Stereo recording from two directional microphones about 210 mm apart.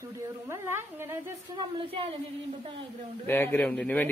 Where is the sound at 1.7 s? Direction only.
25° right (ahead or behind).